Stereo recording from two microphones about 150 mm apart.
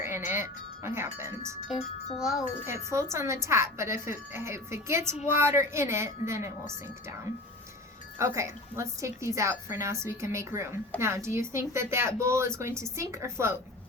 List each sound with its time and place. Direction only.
0.0 s wind chime: 15° right (ahead or behind)
1.7 s wind chime: centre (ahead or behind)
2.6 s a woman's voice: 20° right (ahead or behind)
8.2 s a woman's voice: 20° right (ahead or behind)